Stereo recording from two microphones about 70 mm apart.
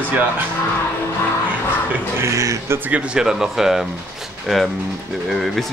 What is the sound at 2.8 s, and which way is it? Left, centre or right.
Speech, centre.